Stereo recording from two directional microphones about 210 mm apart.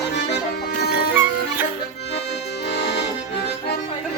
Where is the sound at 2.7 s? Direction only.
55° left (ahead or behind).